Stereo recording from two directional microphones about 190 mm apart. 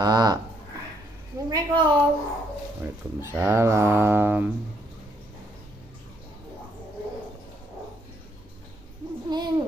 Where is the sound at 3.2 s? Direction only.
10° right (ahead or behind).